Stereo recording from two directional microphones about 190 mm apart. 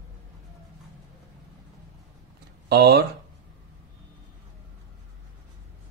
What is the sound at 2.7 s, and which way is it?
Speech, 60° right (ahead or behind).